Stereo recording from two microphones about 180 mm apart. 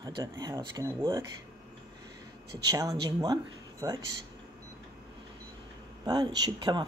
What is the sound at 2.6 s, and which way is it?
Speech, 20° right (ahead or behind).